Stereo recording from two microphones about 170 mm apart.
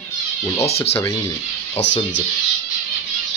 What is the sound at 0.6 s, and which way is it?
Speech, 35° left (ahead or behind).